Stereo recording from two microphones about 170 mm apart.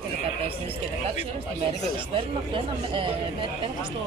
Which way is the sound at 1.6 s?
30° right (ahead or behind).